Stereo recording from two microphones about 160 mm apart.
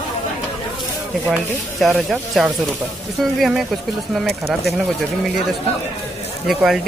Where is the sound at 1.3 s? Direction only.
5° right (ahead or behind).